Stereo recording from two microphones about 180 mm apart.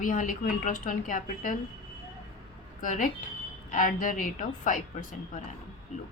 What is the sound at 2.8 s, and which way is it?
A woman's voice, 45° left (ahead or behind).